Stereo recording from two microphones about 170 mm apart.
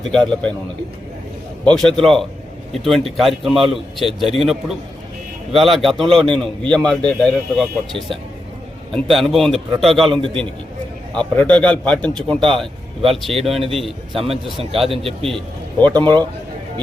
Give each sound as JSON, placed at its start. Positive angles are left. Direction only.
{"t": 0.0, "sound": "a man's voice", "side_deg": 5}
{"t": 1.7, "sound": "a man's voice", "side_deg": 5}
{"t": 14.8, "sound": "a man's voice", "side_deg": -35}